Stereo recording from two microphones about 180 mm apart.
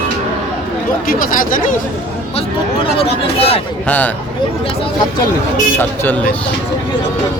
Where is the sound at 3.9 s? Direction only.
10° left (ahead or behind).